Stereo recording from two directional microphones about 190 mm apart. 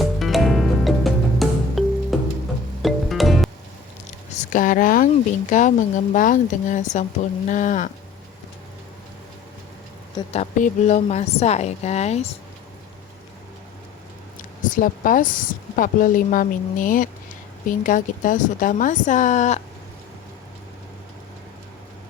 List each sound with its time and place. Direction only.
0.0 s music: centre (ahead or behind)
4.4 s a woman's voice: 45° left (ahead or behind)
10.3 s a woman's voice: 40° left (ahead or behind)
14.6 s speech: 45° left (ahead or behind)